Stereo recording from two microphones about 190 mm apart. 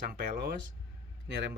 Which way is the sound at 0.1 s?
55° right (ahead or behind).